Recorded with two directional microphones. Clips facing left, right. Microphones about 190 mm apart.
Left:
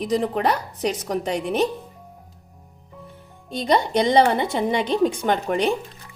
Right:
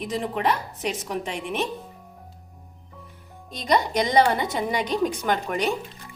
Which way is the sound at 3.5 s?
30° left (ahead or behind).